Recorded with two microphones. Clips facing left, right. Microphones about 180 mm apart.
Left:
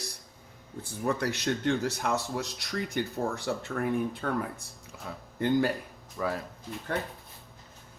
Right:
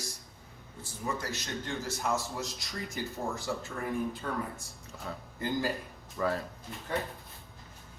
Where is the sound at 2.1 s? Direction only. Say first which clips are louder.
Left 3 dB; centre (ahead or behind).